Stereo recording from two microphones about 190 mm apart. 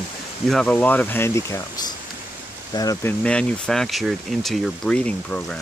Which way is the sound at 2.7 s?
20° left (ahead or behind).